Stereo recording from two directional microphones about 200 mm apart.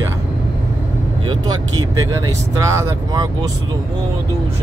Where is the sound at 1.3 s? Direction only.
20° right (ahead or behind).